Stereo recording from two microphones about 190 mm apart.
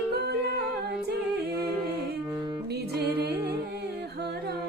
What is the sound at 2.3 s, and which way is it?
Music, 20° right (ahead or behind).